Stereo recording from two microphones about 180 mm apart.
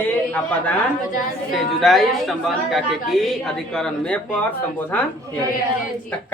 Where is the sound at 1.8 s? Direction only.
Centre (ahead or behind).